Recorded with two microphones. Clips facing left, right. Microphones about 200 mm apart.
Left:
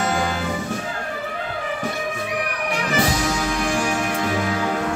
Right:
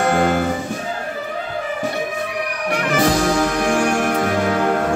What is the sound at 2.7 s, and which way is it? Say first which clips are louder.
Music: right 5 dB; 55° right (ahead or behind).